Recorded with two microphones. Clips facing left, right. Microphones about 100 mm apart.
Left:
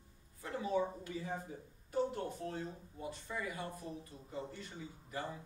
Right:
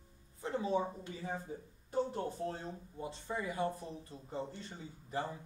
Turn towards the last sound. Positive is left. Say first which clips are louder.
# right 4 dB
turn(degrees=-30)  # may be behind; listen again after turning